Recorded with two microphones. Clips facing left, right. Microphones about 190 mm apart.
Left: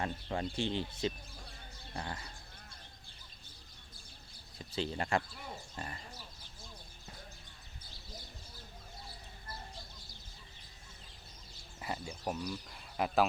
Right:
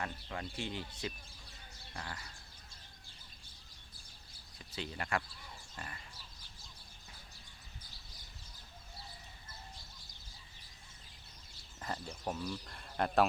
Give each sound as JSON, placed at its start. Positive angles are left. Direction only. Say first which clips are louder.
{"t": 0.0, "sound": "speech", "louder": "left 5 dB", "side_deg": 30}
{"t": 4.5, "sound": "speech", "louder": "left 6 dB", "side_deg": 30}
{"t": 5.7, "sound": "pig", "louder": "left 4 dB", "side_deg": 30}
{"t": 11.8, "sound": "speech", "louder": "left 1 dB", "side_deg": 10}